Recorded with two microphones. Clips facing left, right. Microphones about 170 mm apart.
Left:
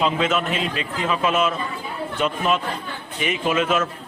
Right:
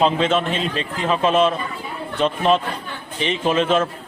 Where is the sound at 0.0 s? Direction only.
30° right (ahead or behind).